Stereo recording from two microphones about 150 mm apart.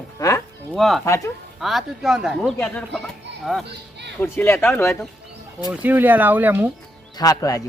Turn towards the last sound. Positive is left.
turn(degrees=25)  # may be behind; listen again after turning